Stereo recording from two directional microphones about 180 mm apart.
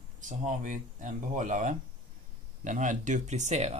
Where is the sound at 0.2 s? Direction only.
45° right (ahead or behind).